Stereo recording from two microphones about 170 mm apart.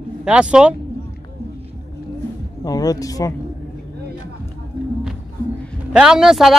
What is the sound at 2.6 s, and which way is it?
Speech, 20° left (ahead or behind).